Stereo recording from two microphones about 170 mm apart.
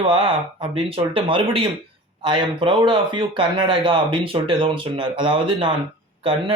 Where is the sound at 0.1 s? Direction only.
30° right (ahead or behind).